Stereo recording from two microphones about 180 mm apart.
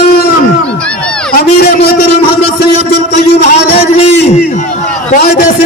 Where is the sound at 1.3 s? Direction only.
60° left (ahead or behind).